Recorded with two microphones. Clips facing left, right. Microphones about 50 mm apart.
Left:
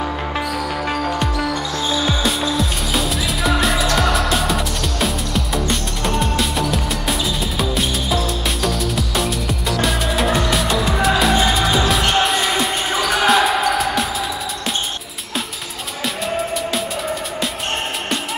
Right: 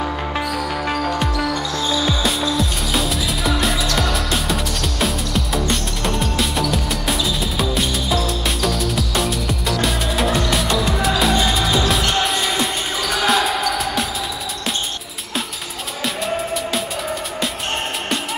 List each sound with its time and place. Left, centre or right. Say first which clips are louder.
0.6 s music: even; centre
1.8 s music: even; centre
2.5 s music: even; centre
13.0 s basketball bounce: left 3 dB; centre
16.3 s music: left 2 dB; centre